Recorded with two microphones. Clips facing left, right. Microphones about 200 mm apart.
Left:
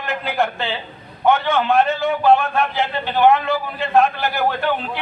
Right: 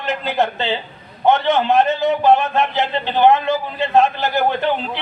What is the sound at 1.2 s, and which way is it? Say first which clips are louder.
A man's voice: right 2 dB; 20° right (ahead or behind).